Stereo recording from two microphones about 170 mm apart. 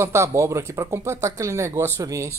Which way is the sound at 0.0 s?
15° right (ahead or behind).